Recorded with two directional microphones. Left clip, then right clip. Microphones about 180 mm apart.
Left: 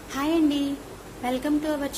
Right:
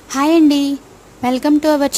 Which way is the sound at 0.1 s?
45° right (ahead or behind).